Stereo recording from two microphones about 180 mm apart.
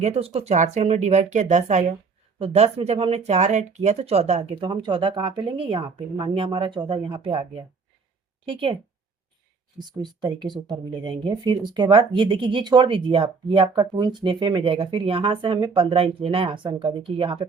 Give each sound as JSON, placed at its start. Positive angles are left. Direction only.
{"t": 0.0, "sound": "speech", "side_deg": -35}
{"t": 9.7, "sound": "speech", "side_deg": -25}